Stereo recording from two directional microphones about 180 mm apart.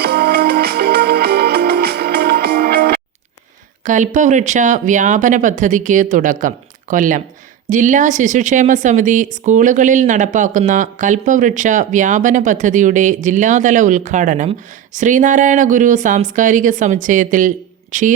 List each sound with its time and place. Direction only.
0.0 s music: 60° right (ahead or behind)
3.8 s speech: 45° right (ahead or behind)